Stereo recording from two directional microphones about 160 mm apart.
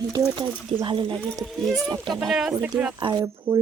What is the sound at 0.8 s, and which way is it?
Speech, 30° right (ahead or behind).